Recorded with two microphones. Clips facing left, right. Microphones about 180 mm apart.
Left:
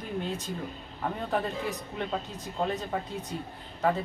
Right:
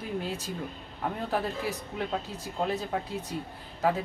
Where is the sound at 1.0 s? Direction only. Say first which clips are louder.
Even; 5° right (ahead or behind).